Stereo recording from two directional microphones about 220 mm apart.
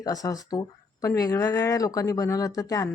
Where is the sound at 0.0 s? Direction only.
15° left (ahead or behind).